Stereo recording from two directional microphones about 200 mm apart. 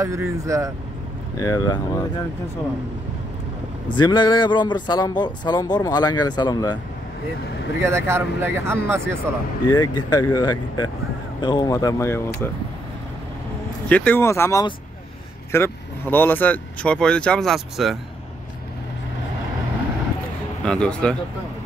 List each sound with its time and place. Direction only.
0.0 s speech: 15° right (ahead or behind)
1.4 s speech: 15° left (ahead or behind)
3.9 s speech: 25° left (ahead or behind)
7.8 s speech: 15° right (ahead or behind)
9.7 s speech: 20° left (ahead or behind)
13.8 s speech: 10° left (ahead or behind)
20.6 s speech: 5° left (ahead or behind)